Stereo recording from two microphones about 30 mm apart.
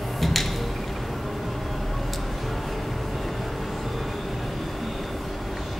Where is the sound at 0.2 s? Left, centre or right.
Centre.